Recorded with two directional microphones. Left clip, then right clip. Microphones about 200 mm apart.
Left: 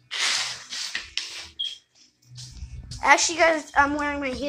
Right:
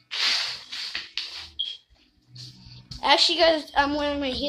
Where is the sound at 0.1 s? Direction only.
45° left (ahead or behind).